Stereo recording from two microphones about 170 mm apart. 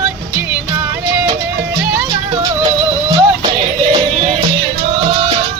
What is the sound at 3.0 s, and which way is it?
Music, 20° right (ahead or behind).